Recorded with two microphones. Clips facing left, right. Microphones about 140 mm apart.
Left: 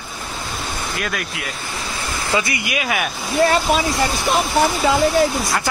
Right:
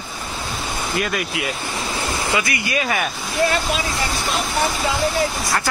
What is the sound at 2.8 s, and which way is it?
Speech, 5° left (ahead or behind).